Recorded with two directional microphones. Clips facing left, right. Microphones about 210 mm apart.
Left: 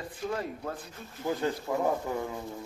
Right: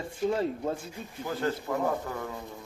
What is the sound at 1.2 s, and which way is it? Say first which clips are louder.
Speech: left 1 dB; 15° left (ahead or behind).